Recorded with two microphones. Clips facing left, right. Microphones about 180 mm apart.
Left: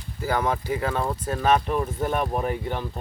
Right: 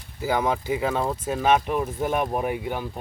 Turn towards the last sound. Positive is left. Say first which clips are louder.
# even
turn(degrees=-10)  # may be behind; listen again after turning